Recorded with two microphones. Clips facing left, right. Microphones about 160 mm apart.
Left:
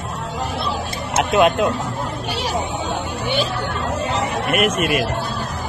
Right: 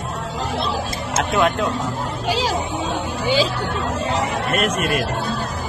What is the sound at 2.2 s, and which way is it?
Vehicle, 90° right.